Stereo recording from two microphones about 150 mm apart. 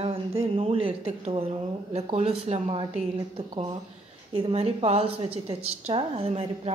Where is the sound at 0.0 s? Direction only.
40° right (ahead or behind).